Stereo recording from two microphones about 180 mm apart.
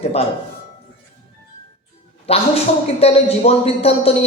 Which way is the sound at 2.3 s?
35° left (ahead or behind).